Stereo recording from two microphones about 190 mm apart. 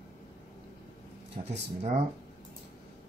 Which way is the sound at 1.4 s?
35° right (ahead or behind).